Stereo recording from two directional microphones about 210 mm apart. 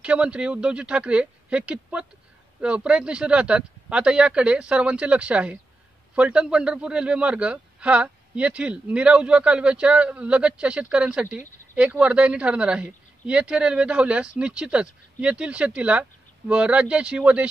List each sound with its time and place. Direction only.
0.0 s speech: 5° right (ahead or behind)